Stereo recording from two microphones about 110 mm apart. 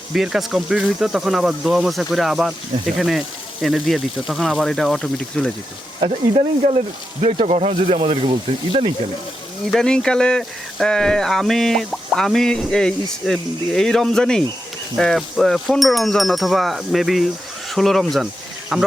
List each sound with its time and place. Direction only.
0.1 s speech: 5° right (ahead or behind)
6.0 s speech: 65° right (ahead or behind)
9.7 s speech: 5° left (ahead or behind)